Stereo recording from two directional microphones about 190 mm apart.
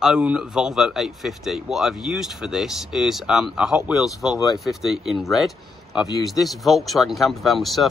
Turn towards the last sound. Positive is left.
turn(degrees=0)  # may be behind; listen again after turning